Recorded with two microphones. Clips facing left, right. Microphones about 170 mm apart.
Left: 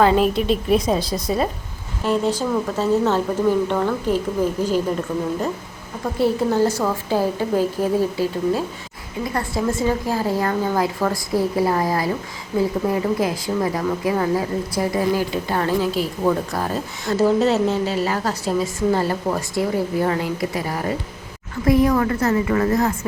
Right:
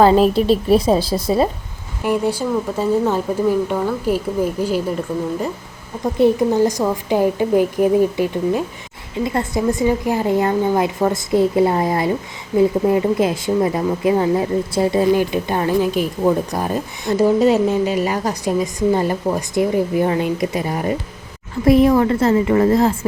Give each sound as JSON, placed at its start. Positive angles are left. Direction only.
{"t": 0.0, "sound": "a woman's voice", "side_deg": -35}
{"t": 2.0, "sound": "a woman's voice", "side_deg": -10}
{"t": 6.1, "sound": "a woman's voice", "side_deg": -20}